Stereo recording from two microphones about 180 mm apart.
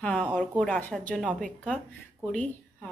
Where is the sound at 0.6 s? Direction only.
10° left (ahead or behind).